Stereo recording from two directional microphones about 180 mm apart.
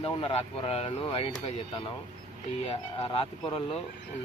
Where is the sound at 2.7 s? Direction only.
30° left (ahead or behind).